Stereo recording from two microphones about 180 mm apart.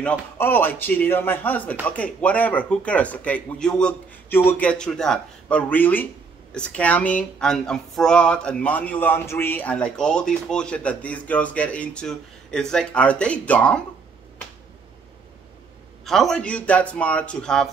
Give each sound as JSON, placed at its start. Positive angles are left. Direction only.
{"t": 0.4, "sound": "speech", "side_deg": 10}
{"t": 16.1, "sound": "speech", "side_deg": 0}